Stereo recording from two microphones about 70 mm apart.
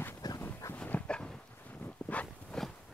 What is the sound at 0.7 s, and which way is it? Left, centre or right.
Dog, left.